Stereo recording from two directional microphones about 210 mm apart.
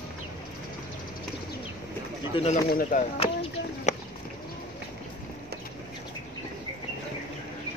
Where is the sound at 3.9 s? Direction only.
35° left (ahead or behind).